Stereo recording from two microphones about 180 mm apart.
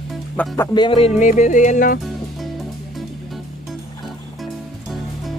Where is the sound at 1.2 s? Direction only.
40° left (ahead or behind).